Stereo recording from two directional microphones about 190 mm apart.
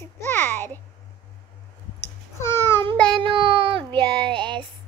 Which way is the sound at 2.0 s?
15° left (ahead or behind).